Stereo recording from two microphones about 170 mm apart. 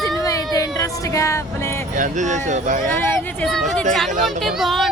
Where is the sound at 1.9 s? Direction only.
50° right (ahead or behind).